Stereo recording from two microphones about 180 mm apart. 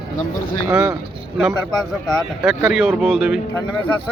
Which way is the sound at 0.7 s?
10° right (ahead or behind).